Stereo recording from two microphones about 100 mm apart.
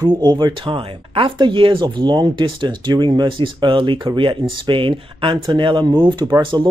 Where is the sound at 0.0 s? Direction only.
45° right (ahead or behind).